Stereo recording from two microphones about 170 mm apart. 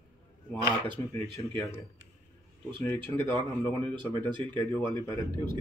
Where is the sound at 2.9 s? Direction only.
10° left (ahead or behind).